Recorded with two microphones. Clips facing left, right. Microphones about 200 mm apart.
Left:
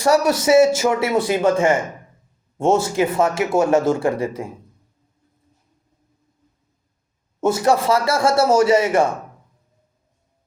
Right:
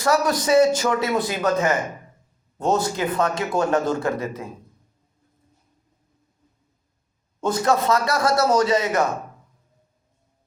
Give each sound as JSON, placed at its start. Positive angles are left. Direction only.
{"t": 0.4, "sound": "speech", "side_deg": 25}
{"t": 7.4, "sound": "speech", "side_deg": 25}